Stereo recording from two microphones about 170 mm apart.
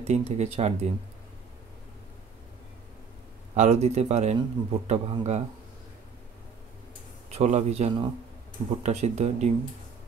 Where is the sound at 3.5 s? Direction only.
40° right (ahead or behind).